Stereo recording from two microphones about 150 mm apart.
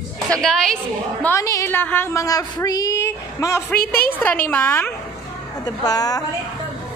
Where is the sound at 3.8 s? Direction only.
90° left.